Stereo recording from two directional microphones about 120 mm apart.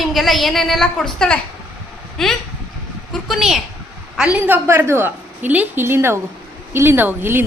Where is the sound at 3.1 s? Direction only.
Centre (ahead or behind).